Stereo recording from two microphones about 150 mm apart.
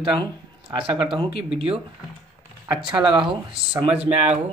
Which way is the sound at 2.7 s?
30° right (ahead or behind).